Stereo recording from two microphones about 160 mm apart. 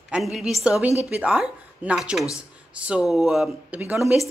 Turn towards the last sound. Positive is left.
turn(degrees=0)  # may be behind; listen again after turning